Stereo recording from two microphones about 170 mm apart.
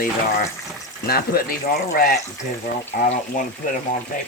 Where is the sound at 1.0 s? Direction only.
60° left (ahead or behind).